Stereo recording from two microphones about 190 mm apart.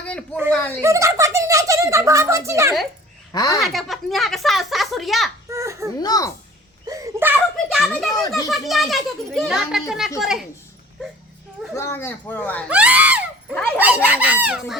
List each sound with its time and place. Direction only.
0.5 s a child's voice: 5° left (ahead or behind)
0.8 s a sound: 15° right (ahead or behind)
3.3 s a child's voice: 20° left (ahead or behind)
3.6 s a child's voice: centre (ahead or behind)
5.5 s baby cry: 15° right (ahead or behind)
6.0 s a child's voice: 20° left (ahead or behind)
6.8 s a sound: 15° right (ahead or behind)
7.5 s a child's voice: centre (ahead or behind)
11.8 s speech: 15° left (ahead or behind)
12.6 s a sound: 5° right (ahead or behind)
13.7 s speech: 10° right (ahead or behind)